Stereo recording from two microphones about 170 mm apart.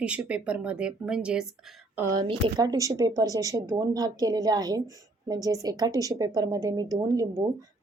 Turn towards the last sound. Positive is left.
turn(degrees=-25)  # may be behind; listen again after turning